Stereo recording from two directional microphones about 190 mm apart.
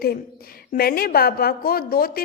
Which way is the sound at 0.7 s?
50° left (ahead or behind).